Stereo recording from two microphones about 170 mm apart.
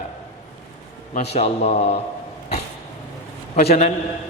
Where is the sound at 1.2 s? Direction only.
40° left (ahead or behind).